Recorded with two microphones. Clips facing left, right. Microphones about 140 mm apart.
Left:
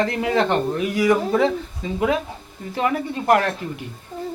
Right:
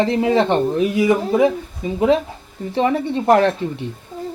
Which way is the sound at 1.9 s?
30° right (ahead or behind).